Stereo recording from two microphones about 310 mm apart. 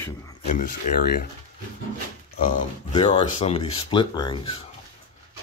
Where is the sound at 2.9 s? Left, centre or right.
Centre.